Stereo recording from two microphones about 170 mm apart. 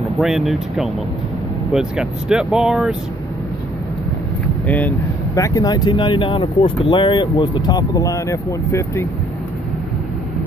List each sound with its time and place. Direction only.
0.2 s speech: centre (ahead or behind)
4.6 s speech: 10° left (ahead or behind)